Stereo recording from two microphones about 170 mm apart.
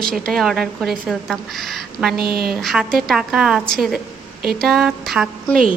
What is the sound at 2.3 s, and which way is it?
Speech, 60° right (ahead or behind).